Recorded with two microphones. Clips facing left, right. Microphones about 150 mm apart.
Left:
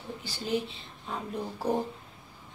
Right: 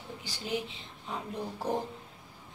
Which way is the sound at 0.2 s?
15° right (ahead or behind).